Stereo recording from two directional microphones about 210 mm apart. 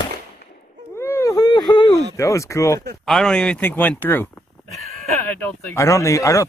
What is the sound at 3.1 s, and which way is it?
Speech, centre (ahead or behind).